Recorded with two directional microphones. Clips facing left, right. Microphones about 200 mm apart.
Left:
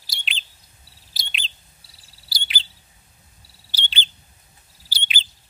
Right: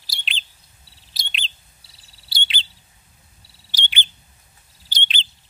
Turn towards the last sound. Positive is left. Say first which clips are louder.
# right 1 dB
turn(degrees=5)  # may be behind; listen again after turning